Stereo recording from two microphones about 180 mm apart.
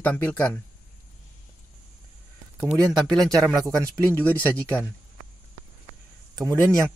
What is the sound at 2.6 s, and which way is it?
Speech, 5° left (ahead or behind).